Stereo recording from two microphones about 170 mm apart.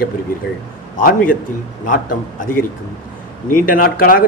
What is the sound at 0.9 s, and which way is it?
A man's voice, 55° left (ahead or behind).